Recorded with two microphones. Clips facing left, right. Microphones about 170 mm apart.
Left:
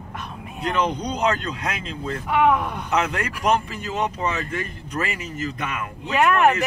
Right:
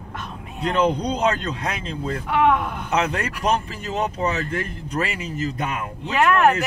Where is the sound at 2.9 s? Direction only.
30° right (ahead or behind).